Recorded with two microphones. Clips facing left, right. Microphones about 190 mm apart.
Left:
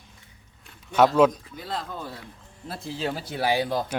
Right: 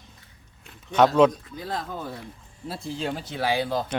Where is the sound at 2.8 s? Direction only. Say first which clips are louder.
Left 1 dB; 5° left (ahead or behind).